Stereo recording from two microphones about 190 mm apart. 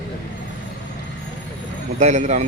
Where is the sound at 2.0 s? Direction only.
35° right (ahead or behind).